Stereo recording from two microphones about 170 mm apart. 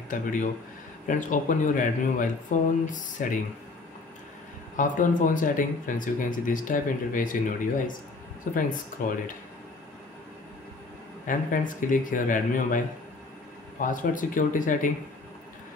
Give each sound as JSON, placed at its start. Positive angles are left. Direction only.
{"t": 0.1, "sound": "speech", "side_deg": 50}
{"t": 4.7, "sound": "speech", "side_deg": 50}
{"t": 8.5, "sound": "speech", "side_deg": 55}
{"t": 11.2, "sound": "speech", "side_deg": 50}